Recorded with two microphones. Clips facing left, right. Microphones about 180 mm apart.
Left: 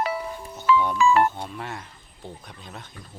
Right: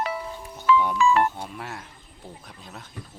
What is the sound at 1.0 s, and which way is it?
Speech, centre (ahead or behind).